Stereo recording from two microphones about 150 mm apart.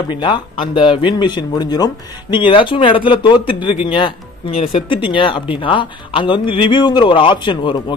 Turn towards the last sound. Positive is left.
turn(degrees=30)  # may be behind; listen again after turning